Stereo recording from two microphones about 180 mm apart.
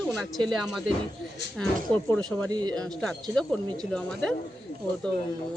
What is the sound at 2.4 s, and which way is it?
Speech, 20° right (ahead or behind).